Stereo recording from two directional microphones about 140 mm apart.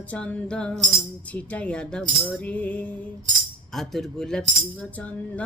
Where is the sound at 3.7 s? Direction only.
Centre (ahead or behind).